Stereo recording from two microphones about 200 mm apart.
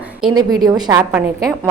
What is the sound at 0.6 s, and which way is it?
Speech, 20° right (ahead or behind).